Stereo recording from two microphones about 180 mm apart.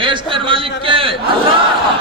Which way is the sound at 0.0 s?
25° right (ahead or behind).